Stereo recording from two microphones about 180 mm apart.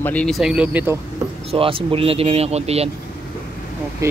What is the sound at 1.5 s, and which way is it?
Speech, 30° right (ahead or behind).